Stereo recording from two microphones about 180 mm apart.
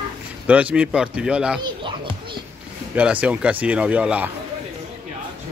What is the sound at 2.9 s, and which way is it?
Speech, 5° right (ahead or behind).